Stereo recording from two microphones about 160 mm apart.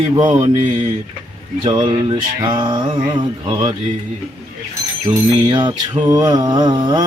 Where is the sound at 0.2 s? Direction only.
20° right (ahead or behind).